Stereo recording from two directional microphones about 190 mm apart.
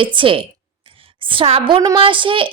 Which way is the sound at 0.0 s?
25° right (ahead or behind).